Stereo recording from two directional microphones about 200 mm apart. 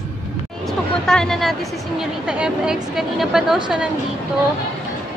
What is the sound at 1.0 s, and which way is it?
Speech, centre (ahead or behind).